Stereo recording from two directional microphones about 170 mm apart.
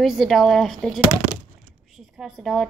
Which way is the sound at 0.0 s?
Centre (ahead or behind).